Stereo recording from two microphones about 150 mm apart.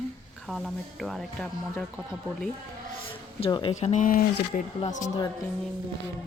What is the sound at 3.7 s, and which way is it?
Speech, 50° left (ahead or behind).